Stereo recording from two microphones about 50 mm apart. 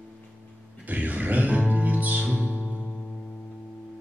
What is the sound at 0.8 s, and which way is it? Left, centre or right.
Music, right.